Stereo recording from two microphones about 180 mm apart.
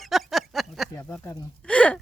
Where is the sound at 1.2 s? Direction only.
5° left (ahead or behind).